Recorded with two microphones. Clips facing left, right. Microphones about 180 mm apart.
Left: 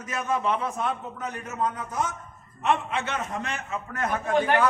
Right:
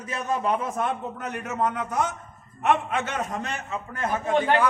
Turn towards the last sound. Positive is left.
turn(degrees=-25)  # may be behind; listen again after turning